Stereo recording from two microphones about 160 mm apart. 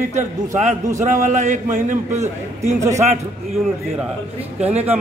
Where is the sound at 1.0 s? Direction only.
50° right (ahead or behind).